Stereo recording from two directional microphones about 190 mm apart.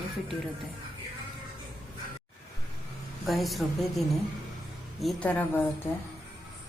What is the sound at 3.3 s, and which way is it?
A man's voice, centre (ahead or behind).